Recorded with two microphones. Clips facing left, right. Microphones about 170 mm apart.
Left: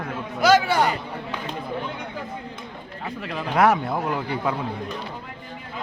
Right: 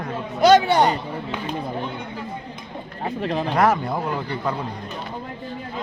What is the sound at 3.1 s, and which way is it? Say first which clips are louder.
Speech: right 7 dB; 30° right (ahead or behind).